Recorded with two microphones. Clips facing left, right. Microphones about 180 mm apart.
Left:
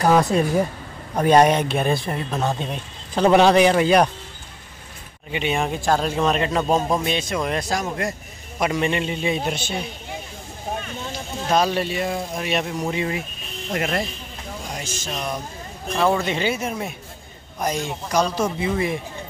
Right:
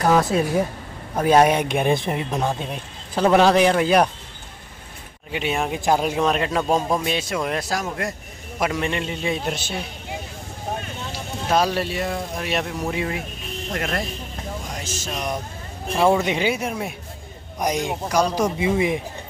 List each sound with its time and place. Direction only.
0.0 s speech: centre (ahead or behind)
5.3 s speech: 5° right (ahead or behind)
7.1 s speech: 5° right (ahead or behind)
11.4 s speech: 5° right (ahead or behind)
16.1 s speech: 15° right (ahead or behind)